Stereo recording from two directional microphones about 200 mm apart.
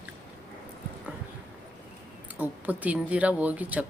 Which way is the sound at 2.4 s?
10° right (ahead or behind).